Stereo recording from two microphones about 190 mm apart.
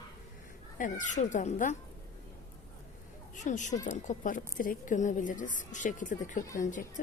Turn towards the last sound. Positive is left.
turn(degrees=40)  # may be behind; listen again after turning